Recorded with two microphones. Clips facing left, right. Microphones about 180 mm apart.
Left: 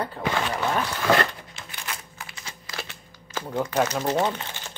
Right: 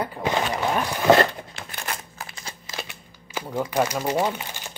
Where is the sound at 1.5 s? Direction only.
50° right (ahead or behind).